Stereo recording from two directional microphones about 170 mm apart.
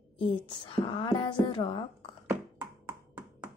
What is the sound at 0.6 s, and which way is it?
Speech, 30° left (ahead or behind).